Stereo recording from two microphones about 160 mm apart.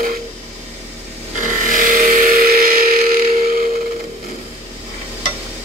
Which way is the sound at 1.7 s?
60° right (ahead or behind).